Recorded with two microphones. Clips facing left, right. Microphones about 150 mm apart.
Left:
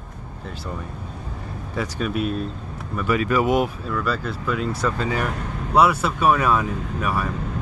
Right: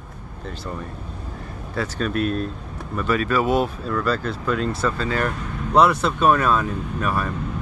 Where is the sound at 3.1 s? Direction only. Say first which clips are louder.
Left 1 dB; 15° left (ahead or behind).